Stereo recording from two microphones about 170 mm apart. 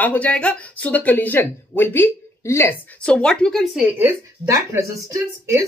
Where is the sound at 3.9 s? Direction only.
15° right (ahead or behind).